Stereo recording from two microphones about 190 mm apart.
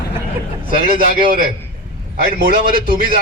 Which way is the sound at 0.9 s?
50° right (ahead or behind).